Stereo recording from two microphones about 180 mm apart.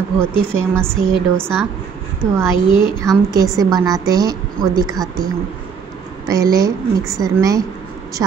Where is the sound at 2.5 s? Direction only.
25° left (ahead or behind).